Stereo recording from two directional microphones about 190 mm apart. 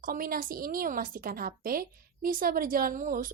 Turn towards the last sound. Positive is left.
turn(degrees=-45)  # may be behind; listen again after turning